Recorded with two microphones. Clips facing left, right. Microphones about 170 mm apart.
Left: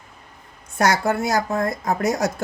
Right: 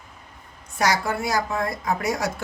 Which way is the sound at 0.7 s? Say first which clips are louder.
Left 4 dB; 50° left (ahead or behind).